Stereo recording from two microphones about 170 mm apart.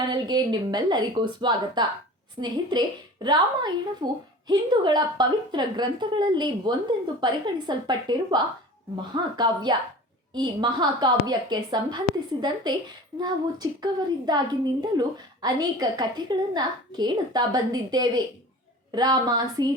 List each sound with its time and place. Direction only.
0.1 s a woman's voice: 25° right (ahead or behind)